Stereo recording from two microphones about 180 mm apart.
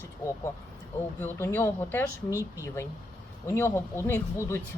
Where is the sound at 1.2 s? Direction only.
10° left (ahead or behind).